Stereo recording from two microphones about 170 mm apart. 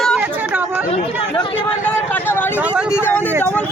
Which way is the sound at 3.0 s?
10° left (ahead or behind).